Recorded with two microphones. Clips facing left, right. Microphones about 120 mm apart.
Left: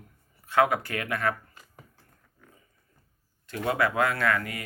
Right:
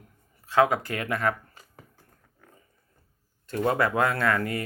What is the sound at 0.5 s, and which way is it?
Speech, 25° right (ahead or behind).